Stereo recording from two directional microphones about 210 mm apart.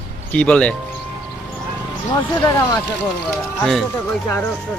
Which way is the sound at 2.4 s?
20° left (ahead or behind).